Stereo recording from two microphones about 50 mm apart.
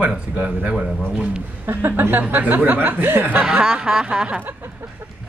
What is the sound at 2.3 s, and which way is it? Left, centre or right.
Speech, right.